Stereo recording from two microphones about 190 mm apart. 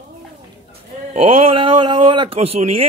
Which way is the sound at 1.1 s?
30° right (ahead or behind).